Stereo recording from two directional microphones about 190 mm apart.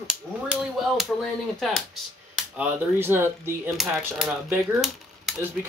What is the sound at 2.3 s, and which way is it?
Speech, 5° right (ahead or behind).